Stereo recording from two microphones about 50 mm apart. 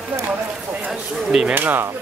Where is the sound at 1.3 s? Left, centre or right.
Centre.